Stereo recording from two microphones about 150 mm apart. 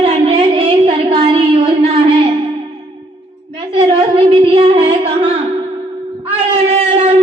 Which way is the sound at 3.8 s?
40° right (ahead or behind).